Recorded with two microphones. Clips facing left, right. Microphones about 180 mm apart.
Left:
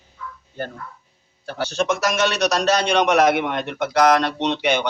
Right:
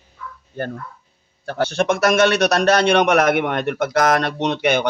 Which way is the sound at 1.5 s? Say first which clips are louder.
Right 3 dB; 55° right (ahead or behind).